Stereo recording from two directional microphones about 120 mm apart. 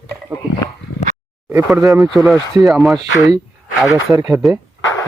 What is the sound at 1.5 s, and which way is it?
Speech, 25° right (ahead or behind).